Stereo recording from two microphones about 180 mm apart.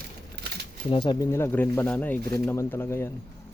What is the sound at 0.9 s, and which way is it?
Speech, 25° left (ahead or behind).